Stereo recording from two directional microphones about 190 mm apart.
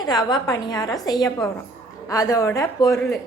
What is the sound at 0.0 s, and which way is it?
A woman's voice, 20° left (ahead or behind).